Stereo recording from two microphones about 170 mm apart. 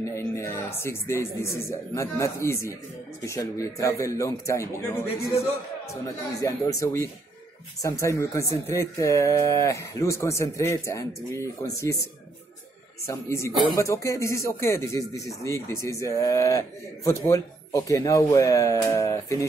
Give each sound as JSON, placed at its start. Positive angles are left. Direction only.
{"t": 0.0, "sound": "speech", "side_deg": 15}
{"t": 6.0, "sound": "speech", "side_deg": 20}
{"t": 13.0, "sound": "speech", "side_deg": 15}